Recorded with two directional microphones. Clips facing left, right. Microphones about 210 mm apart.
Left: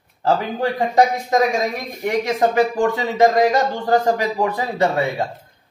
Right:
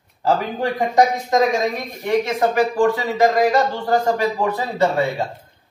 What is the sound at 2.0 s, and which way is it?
Speech, 20° left (ahead or behind).